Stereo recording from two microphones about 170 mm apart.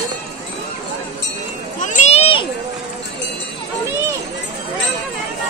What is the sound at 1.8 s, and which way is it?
Children playing, 40° left (ahead or behind).